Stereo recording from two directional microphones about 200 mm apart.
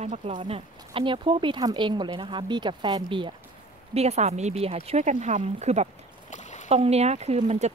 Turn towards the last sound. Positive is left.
turn(degrees=-35)  # may be behind; listen again after turning